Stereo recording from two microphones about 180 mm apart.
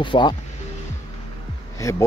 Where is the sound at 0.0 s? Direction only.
25° left (ahead or behind).